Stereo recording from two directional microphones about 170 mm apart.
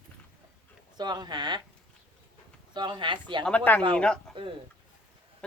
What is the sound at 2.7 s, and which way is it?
Speech, 25° right (ahead or behind).